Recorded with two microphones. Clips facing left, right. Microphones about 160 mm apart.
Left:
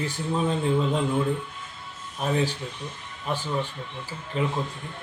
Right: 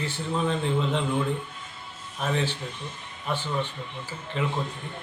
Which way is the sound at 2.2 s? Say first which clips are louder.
Left 2 dB; 10° left (ahead or behind).